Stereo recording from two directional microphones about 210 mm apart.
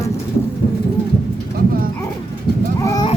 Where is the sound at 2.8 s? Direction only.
15° left (ahead or behind).